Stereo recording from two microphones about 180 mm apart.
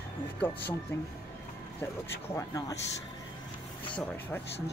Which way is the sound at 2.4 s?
20° left (ahead or behind).